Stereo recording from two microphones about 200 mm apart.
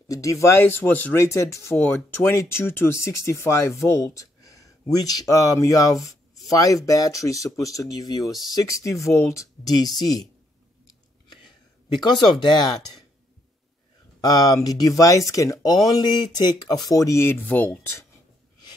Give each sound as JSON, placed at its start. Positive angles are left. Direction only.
{"t": 0.1, "sound": "speech", "side_deg": 15}
{"t": 12.0, "sound": "speech", "side_deg": 20}
{"t": 14.2, "sound": "speech", "side_deg": 20}